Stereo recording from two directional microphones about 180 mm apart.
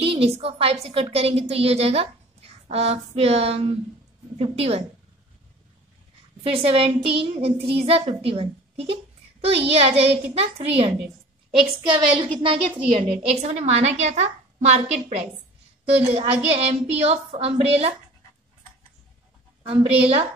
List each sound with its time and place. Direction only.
0.0 s a woman's voice: 30° right (ahead or behind)
6.4 s a woman's voice: 30° right (ahead or behind)
11.9 s a woman's voice: 25° right (ahead or behind)
16.6 s a woman's voice: 35° right (ahead or behind)
19.6 s a woman's voice: 35° right (ahead or behind)